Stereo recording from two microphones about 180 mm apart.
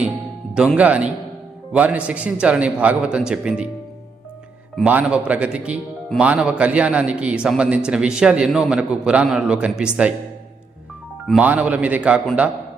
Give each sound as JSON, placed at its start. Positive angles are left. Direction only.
{"t": 0.5, "sound": "a man's voice", "side_deg": -5}
{"t": 4.7, "sound": "speech", "side_deg": -5}
{"t": 11.3, "sound": "a man's voice", "side_deg": -10}